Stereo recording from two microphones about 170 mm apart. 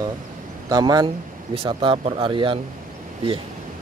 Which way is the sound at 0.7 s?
25° right (ahead or behind).